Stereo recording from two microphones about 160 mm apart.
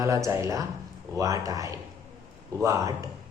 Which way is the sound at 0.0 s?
20° right (ahead or behind).